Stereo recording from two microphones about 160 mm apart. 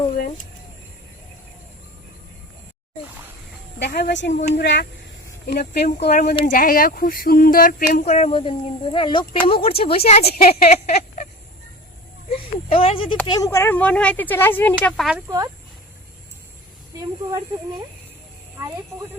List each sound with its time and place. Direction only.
3.8 s speech: 90° left
4.3 s speech: 45° left (ahead or behind)
4.5 s speech: 90° left
6.1 s speech: 55° left (ahead or behind)
7.9 s speech: 50° left (ahead or behind)
8.3 s speech: 35° left (ahead or behind)
12.3 s speech: 35° left (ahead or behind)
13.2 s speech: 25° left (ahead or behind); by 15.1 s 5° left (ahead or behind)